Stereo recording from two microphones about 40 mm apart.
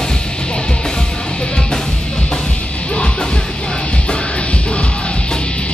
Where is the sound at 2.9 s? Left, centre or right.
Left.